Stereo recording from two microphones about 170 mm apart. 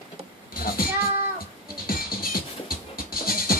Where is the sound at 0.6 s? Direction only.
60° left (ahead or behind).